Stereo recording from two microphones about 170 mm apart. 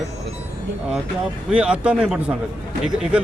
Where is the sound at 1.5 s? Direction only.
5° right (ahead or behind).